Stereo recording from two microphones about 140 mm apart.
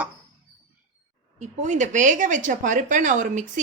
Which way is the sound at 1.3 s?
60° right (ahead or behind).